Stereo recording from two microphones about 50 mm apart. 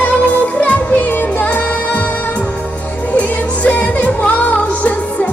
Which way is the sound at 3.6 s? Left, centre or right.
Left.